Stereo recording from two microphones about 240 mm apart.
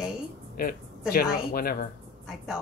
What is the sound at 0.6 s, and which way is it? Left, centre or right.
Speech, left.